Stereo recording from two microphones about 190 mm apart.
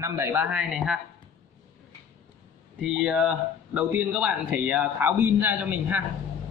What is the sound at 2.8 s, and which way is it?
A man's voice, 5° right (ahead or behind).